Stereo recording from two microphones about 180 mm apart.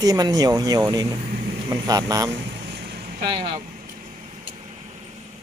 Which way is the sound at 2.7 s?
60° right (ahead or behind).